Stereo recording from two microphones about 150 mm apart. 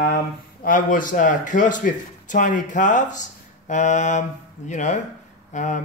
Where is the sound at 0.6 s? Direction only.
65° left (ahead or behind).